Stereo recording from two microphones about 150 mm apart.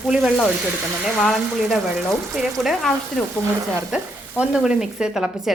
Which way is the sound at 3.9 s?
5° right (ahead or behind).